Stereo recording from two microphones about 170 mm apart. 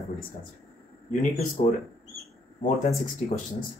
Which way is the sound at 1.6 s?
40° left (ahead or behind).